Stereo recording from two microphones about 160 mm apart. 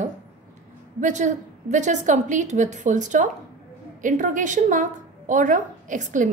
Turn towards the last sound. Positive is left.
turn(degrees=-55)  # may be behind; listen again after turning